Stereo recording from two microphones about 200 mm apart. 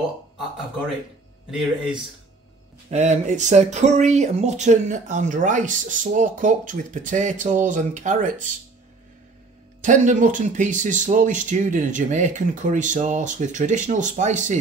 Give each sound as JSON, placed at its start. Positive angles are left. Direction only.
{"t": 1.5, "sound": "speech", "side_deg": 0}
{"t": 2.9, "sound": "speech", "side_deg": -35}
{"t": 9.8, "sound": "speech", "side_deg": -40}